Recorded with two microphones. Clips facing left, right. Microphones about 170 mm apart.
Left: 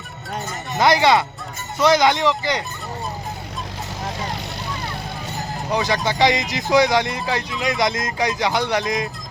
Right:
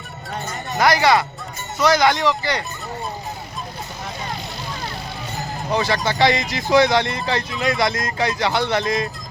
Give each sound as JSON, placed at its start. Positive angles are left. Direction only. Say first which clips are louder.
{"t": 0.8, "sound": "speech", "louder": "left 1 dB", "side_deg": 20}
{"t": 5.7, "sound": "speech", "louder": "even", "side_deg": 15}